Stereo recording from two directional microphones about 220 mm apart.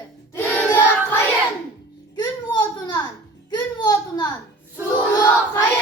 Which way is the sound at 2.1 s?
20° left (ahead or behind).